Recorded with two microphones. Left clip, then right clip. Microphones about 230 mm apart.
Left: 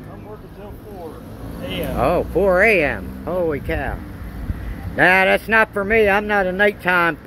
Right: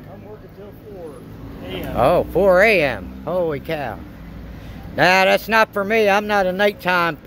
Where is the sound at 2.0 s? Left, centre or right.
Right.